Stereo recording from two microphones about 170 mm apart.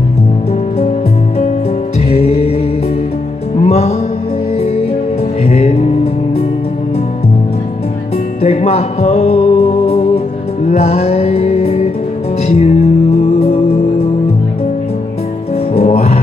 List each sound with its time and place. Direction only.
2.0 s music: 35° left (ahead or behind)
3.6 s music: 40° left (ahead or behind)
5.4 s music: 40° left (ahead or behind)
8.4 s music: 40° left (ahead or behind)
15.7 s music: 35° left (ahead or behind)